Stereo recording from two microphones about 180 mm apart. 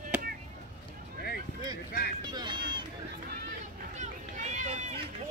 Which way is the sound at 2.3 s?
25° right (ahead or behind).